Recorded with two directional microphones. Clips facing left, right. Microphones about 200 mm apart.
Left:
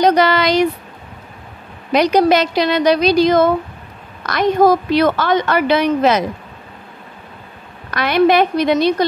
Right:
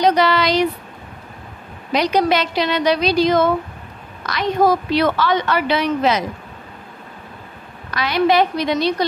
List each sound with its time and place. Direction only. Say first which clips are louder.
0.0 s speech: left 3 dB; 45° left (ahead or behind)
1.9 s a woman's voice: left 4 dB; 45° left (ahead or behind)
7.9 s a woman's voice: left 4 dB; 55° left (ahead or behind)